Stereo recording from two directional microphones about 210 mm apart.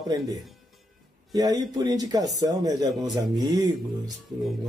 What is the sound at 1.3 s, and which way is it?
Speech, 20° right (ahead or behind).